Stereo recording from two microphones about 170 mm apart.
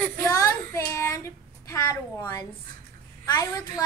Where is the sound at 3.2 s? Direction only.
20° left (ahead or behind).